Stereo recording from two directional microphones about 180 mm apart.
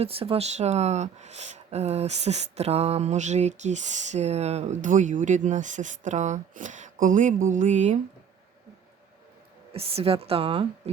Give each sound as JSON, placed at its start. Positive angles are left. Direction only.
{"t": 0.0, "sound": "speech", "side_deg": -30}
{"t": 9.7, "sound": "speech", "side_deg": -35}